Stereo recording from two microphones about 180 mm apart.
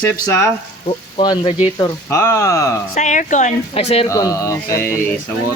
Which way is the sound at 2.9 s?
45° left (ahead or behind).